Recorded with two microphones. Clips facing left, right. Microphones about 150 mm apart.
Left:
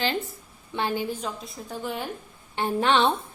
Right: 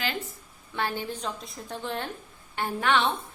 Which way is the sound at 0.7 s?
15° left (ahead or behind).